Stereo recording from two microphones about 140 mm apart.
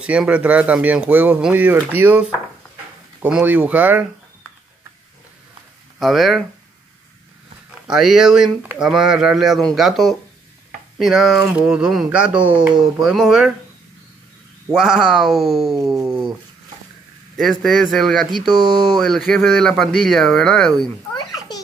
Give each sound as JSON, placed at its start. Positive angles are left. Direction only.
{"t": 0.0, "sound": "speech", "side_deg": -10}
{"t": 5.9, "sound": "speech", "side_deg": 0}
{"t": 7.8, "sound": "speech", "side_deg": -5}
{"t": 14.7, "sound": "speech", "side_deg": -5}
{"t": 15.8, "sound": "cat", "side_deg": -25}
{"t": 17.4, "sound": "speech", "side_deg": 0}
{"t": 18.5, "sound": "speech", "side_deg": -30}
{"t": 18.9, "sound": "speech", "side_deg": 0}
{"t": 21.1, "sound": "a sound", "side_deg": 30}